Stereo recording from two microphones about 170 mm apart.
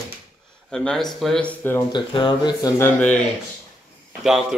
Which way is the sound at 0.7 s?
Centre (ahead or behind).